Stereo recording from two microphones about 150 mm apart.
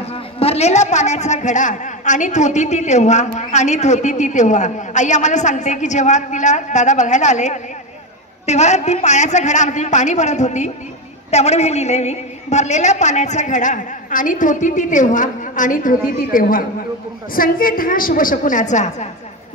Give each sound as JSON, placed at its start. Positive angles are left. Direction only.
{"t": 0.1, "sound": "a man's voice", "side_deg": 40}